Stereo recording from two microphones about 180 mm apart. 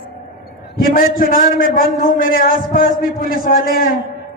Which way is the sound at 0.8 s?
55° left (ahead or behind).